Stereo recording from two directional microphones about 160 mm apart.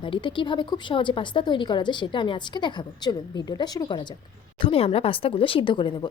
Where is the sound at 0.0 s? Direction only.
30° left (ahead or behind).